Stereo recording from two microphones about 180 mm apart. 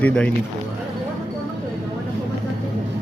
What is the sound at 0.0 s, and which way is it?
Speech, 5° left (ahead or behind).